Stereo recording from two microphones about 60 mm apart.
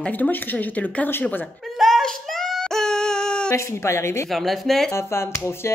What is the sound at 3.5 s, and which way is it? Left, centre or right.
Speech, left.